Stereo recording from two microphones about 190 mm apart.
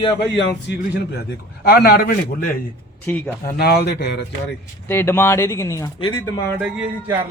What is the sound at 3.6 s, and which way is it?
Speech, 55° left (ahead or behind).